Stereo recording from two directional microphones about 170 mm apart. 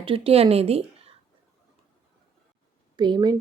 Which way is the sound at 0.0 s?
35° right (ahead or behind).